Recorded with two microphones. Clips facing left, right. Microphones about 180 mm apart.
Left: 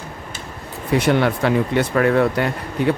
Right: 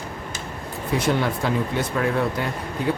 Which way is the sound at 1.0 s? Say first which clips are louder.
Left 5 dB; 70° left (ahead or behind).